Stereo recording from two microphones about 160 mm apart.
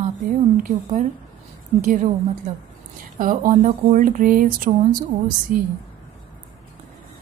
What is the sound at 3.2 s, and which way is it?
Speech, 55° right (ahead or behind).